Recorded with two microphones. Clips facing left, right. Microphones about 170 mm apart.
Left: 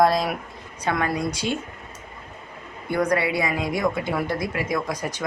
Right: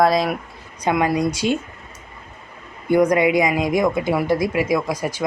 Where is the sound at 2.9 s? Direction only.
15° right (ahead or behind).